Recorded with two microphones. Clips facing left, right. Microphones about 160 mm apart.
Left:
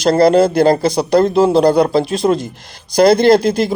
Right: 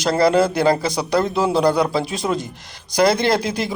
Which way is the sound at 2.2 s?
35° left (ahead or behind).